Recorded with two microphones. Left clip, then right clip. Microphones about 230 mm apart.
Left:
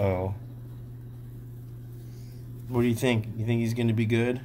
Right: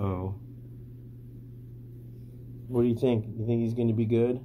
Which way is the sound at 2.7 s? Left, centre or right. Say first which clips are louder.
Even; left.